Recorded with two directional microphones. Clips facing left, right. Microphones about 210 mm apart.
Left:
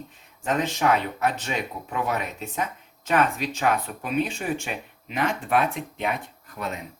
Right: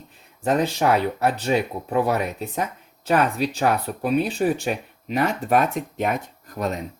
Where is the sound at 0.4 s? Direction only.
35° right (ahead or behind).